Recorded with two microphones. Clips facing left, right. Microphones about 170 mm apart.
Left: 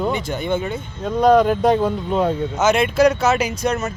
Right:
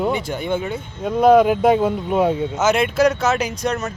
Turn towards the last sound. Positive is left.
turn(degrees=5)  # may be behind; listen again after turning